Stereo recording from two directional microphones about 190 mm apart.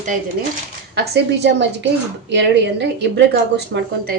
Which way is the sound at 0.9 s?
60° right (ahead or behind).